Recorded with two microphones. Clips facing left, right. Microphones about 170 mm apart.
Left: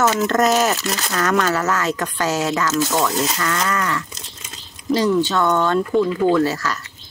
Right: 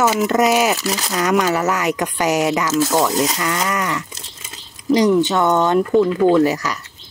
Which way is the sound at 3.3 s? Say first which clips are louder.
Right 1 dB; 15° right (ahead or behind).